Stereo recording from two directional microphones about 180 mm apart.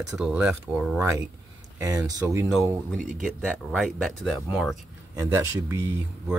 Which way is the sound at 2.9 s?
45° right (ahead or behind).